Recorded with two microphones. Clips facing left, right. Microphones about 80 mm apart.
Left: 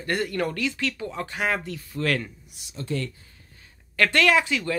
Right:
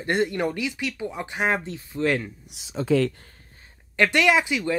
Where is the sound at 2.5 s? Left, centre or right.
Right.